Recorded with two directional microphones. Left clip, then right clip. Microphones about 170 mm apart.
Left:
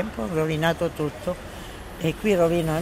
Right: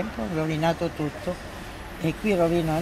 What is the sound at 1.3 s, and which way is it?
Speech, 30° left (ahead or behind).